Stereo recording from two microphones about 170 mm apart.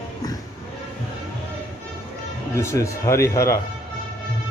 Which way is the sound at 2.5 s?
15° left (ahead or behind).